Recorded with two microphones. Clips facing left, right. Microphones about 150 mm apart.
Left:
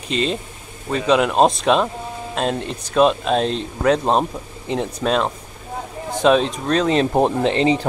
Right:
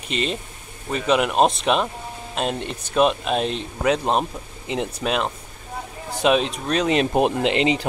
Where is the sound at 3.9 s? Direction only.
30° left (ahead or behind).